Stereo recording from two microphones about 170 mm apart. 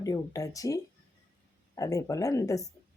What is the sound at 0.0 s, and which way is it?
Speech, 20° left (ahead or behind).